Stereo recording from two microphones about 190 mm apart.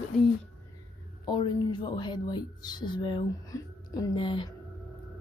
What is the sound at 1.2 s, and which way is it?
A woman's voice, 25° left (ahead or behind).